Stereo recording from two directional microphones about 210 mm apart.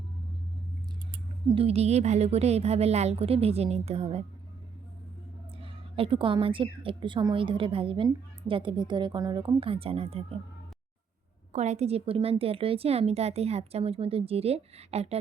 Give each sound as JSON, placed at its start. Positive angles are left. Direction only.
{"t": 1.5, "sound": "a woman's voice", "side_deg": -30}
{"t": 5.5, "sound": "a woman's voice", "side_deg": -25}
{"t": 11.5, "sound": "a woman's voice", "side_deg": -35}